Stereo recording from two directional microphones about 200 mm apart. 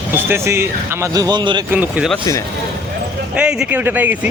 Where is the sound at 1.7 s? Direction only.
10° right (ahead or behind).